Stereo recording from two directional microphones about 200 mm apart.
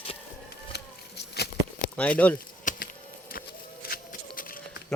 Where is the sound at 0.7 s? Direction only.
55° left (ahead or behind).